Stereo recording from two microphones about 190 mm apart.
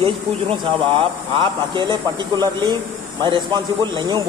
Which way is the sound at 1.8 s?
25° right (ahead or behind).